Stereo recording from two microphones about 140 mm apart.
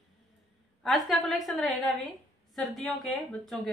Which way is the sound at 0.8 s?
Centre (ahead or behind).